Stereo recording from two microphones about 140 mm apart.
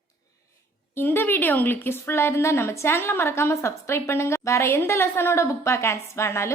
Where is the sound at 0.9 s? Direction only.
15° left (ahead or behind).